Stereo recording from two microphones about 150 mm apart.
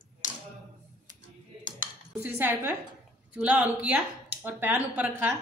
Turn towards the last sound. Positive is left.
turn(degrees=-10)  # may be behind; listen again after turning